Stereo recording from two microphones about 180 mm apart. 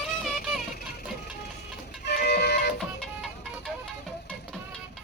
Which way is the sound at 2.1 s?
65° left (ahead or behind).